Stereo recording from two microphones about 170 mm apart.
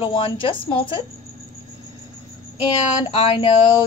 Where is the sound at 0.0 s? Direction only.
30° left (ahead or behind).